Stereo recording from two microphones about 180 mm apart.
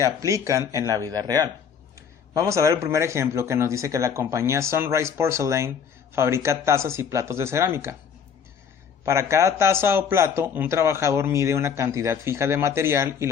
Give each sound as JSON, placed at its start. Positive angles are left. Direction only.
{"t": 0.0, "sound": "speech", "side_deg": -20}
{"t": 9.0, "sound": "speech", "side_deg": -15}